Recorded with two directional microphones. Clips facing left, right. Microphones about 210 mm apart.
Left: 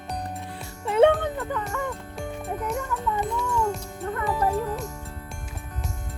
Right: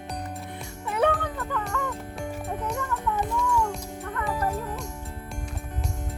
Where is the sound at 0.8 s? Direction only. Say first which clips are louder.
Left 6 dB; 25° left (ahead or behind).